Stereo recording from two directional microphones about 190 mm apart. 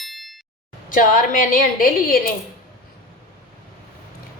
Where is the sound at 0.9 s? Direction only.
45° left (ahead or behind).